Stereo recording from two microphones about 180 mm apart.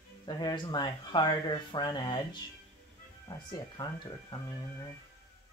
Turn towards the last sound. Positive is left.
turn(degrees=20)  # may be behind; listen again after turning